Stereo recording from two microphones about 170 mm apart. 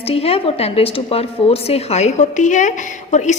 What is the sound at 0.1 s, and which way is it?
A woman's voice, 35° left (ahead or behind).